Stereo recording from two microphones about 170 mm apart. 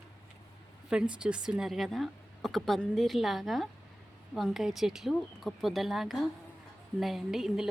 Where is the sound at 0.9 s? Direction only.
5° right (ahead or behind).